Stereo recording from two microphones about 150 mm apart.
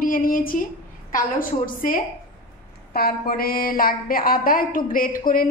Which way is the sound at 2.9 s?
85° left.